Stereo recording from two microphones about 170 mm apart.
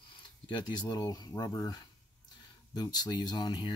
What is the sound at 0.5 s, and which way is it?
Speech, 30° left (ahead or behind).